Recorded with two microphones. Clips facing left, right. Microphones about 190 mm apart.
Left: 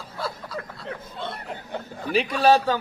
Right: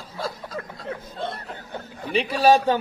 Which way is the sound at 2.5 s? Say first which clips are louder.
Right 2 dB; 20° right (ahead or behind).